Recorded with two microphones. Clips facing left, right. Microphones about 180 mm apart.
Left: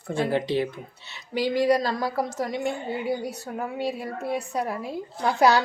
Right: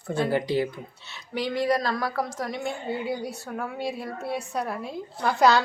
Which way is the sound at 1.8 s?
35° left (ahead or behind).